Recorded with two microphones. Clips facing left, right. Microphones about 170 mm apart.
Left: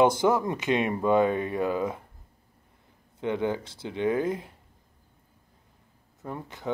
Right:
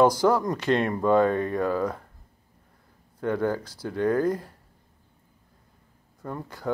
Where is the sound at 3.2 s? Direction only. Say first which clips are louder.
Right 2 dB; 20° left (ahead or behind).